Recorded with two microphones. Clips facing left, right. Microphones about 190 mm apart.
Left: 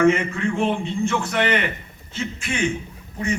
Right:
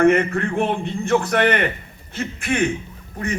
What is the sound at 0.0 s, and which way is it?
A man's voice, 60° right (ahead or behind).